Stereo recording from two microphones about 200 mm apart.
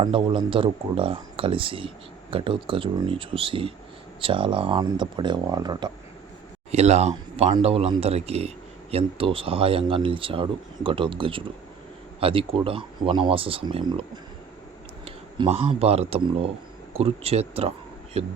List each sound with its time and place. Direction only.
0.0 s speech: 25° right (ahead or behind)
6.7 s speech: 35° right (ahead or behind)
15.0 s speech: 30° right (ahead or behind)